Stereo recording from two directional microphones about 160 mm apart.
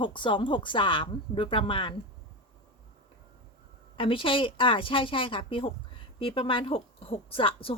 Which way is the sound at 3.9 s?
35° left (ahead or behind).